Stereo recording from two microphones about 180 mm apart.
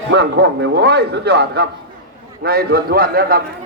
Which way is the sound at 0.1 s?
70° right (ahead or behind).